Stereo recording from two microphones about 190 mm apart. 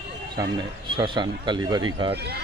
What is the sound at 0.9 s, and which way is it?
Speech, 25° right (ahead or behind).